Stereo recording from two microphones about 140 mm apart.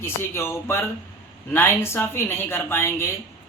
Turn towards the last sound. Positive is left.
turn(degrees=15)  # may be behind; listen again after turning